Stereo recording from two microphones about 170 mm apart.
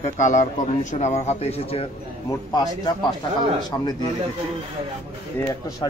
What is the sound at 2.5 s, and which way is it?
A man's voice, 20° left (ahead or behind).